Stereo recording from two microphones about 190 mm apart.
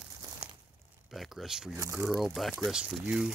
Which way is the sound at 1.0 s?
Centre (ahead or behind).